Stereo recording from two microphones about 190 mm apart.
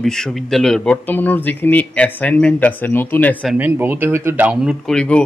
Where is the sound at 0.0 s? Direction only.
Centre (ahead or behind).